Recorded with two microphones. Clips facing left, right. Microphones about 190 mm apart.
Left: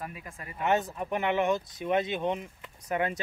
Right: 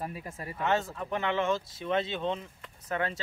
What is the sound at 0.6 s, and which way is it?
Speech, 20° left (ahead or behind).